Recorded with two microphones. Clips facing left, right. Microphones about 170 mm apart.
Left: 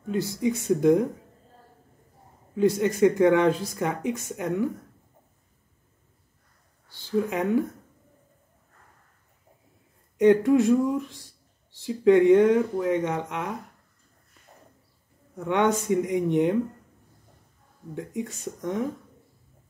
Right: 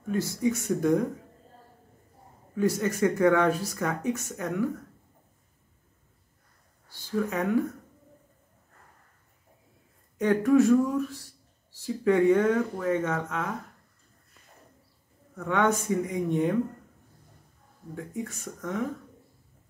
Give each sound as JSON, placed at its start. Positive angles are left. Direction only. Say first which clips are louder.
{"t": 0.1, "sound": "speech", "louder": "left 1 dB", "side_deg": 15}
{"t": 3.0, "sound": "speech", "louder": "left 3 dB", "side_deg": 20}
{"t": 7.2, "sound": "speech", "louder": "left 2 dB", "side_deg": 25}
{"t": 10.1, "sound": "speech", "louder": "left 3 dB", "side_deg": 20}
{"t": 15.3, "sound": "speech", "louder": "left 2 dB", "side_deg": 20}
{"t": 17.9, "sound": "speech", "louder": "left 3 dB", "side_deg": 20}